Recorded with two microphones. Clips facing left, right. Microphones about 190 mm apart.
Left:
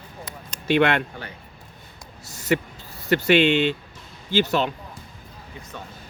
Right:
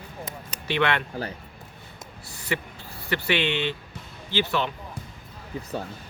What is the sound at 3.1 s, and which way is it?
Speech, 45° left (ahead or behind).